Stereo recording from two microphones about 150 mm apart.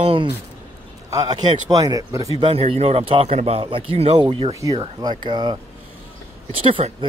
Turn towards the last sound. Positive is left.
turn(degrees=-35)  # may be behind; listen again after turning